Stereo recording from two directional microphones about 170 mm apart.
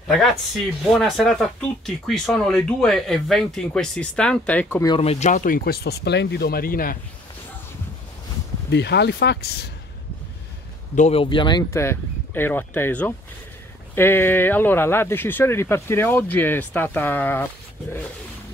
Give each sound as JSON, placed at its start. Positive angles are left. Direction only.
{"t": 0.9, "sound": "speech", "side_deg": 0}
{"t": 4.9, "sound": "speech", "side_deg": 40}
{"t": 8.6, "sound": "speech", "side_deg": 80}
{"t": 11.0, "sound": "speech", "side_deg": 35}
{"t": 11.7, "sound": "speech", "side_deg": 15}